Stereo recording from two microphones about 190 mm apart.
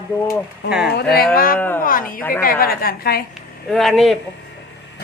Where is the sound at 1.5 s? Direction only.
10° left (ahead or behind).